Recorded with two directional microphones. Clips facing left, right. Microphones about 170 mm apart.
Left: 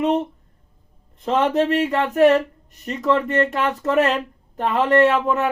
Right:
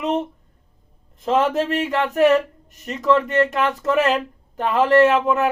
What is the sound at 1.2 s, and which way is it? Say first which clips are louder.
A woman's voice: even; centre (ahead or behind).